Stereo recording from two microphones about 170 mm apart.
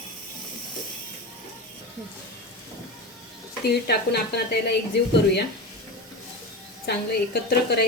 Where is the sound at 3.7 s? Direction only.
75° left (ahead or behind).